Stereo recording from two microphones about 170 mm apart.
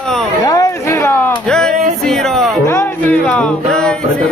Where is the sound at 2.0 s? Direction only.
Centre (ahead or behind).